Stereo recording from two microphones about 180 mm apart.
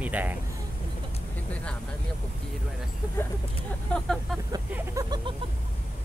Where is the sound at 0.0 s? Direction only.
10° right (ahead or behind).